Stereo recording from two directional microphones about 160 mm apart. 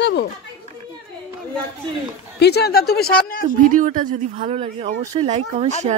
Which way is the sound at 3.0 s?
65° left (ahead or behind).